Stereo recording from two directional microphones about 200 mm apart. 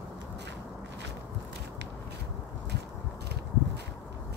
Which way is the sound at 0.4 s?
60° right (ahead or behind).